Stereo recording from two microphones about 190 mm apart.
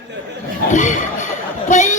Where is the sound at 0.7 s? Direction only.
40° left (ahead or behind).